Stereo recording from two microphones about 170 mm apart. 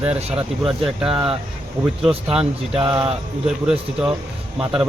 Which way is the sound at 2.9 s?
5° right (ahead or behind).